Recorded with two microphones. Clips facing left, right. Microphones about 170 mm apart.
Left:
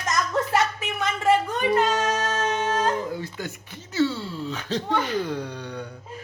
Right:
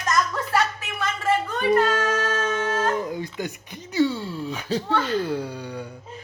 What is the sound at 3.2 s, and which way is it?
Speech, 15° right (ahead or behind).